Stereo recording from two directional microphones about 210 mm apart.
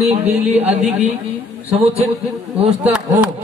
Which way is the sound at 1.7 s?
30° right (ahead or behind).